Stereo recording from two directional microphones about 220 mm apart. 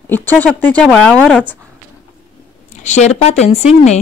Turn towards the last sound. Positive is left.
turn(degrees=30)  # may be behind; listen again after turning